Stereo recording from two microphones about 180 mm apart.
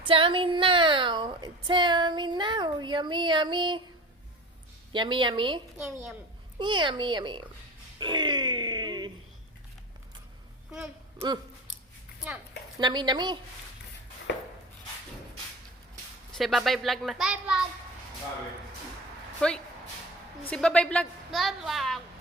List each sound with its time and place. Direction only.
0.0 s a woman's voice: 30° right (ahead or behind)
4.9 s speech: 25° right (ahead or behind)
6.6 s speech: 25° right (ahead or behind)
12.8 s speech: 25° right (ahead or behind)
16.3 s a woman's voice: centre (ahead or behind)
19.4 s a woman's voice: 5° left (ahead or behind)